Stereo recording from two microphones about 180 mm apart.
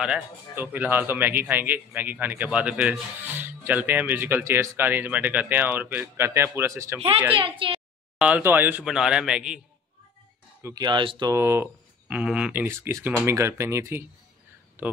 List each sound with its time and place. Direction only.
0.0 s speech: 5° right (ahead or behind)
7.3 s a woman's voice: 30° right (ahead or behind)
8.2 s a man's voice: 10° right (ahead or behind)
10.6 s speech: 20° right (ahead or behind)